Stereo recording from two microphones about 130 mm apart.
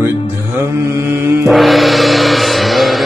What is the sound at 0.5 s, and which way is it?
Mantra, 20° right (ahead or behind).